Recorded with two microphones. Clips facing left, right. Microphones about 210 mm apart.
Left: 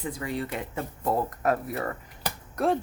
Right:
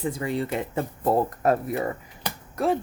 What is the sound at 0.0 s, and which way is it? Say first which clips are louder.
Speech: right 4 dB; 25° right (ahead or behind).